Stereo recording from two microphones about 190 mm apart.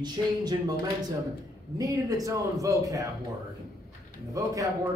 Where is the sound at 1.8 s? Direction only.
20° right (ahead or behind).